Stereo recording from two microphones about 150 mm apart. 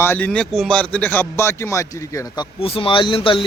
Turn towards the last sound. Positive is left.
turn(degrees=35)  # may be behind; listen again after turning